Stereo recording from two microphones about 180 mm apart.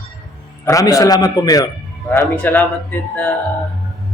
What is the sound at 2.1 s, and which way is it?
Speech, 10° left (ahead or behind).